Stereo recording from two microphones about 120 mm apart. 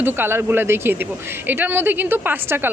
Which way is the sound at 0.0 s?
20° right (ahead or behind).